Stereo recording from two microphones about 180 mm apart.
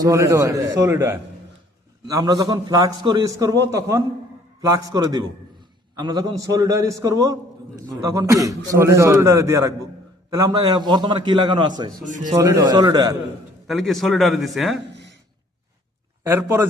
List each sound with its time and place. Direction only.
0.0 s a man's voice: 15° right (ahead or behind)
13.7 s a man's voice: centre (ahead or behind)
16.2 s a man's voice: 10° right (ahead or behind)